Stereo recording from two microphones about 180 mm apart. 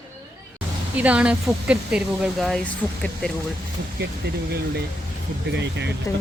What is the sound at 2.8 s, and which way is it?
Speech, 10° left (ahead or behind).